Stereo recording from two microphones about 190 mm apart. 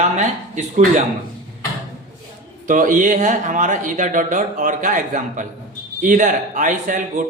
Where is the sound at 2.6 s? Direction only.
45° right (ahead or behind).